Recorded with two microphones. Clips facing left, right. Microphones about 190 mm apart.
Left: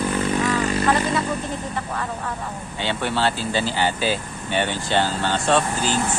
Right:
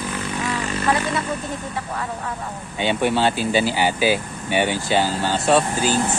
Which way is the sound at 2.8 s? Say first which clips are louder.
Right 4 dB; 15° right (ahead or behind).